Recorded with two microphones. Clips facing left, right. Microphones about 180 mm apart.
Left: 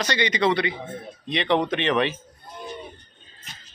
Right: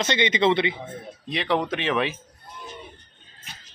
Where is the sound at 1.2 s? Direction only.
5° right (ahead or behind).